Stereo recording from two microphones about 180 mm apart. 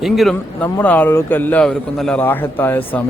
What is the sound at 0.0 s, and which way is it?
Speech, centre (ahead or behind).